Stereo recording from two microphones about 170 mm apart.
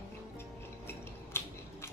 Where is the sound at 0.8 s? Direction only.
15° left (ahead or behind).